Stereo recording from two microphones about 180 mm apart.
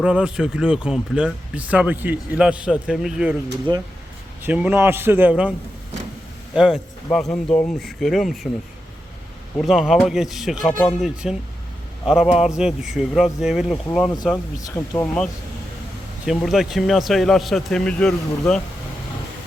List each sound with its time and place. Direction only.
0.0 s speech: 5° right (ahead or behind)
3.7 s speech: 25° right (ahead or behind)
4.4 s a man's voice: 10° right (ahead or behind)
9.6 s speech: centre (ahead or behind)
14.6 s speech: 15° left (ahead or behind)